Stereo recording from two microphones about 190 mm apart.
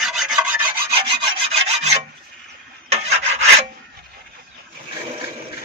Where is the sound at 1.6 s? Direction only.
35° right (ahead or behind).